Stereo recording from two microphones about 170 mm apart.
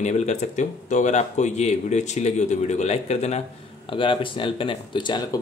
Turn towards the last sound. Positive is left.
turn(degrees=25)  # may be behind; listen again after turning